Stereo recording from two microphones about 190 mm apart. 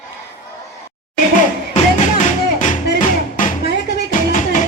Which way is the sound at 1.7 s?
40° left (ahead or behind).